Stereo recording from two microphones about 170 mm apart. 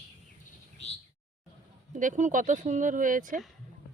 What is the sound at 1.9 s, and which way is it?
Speech, 50° right (ahead or behind).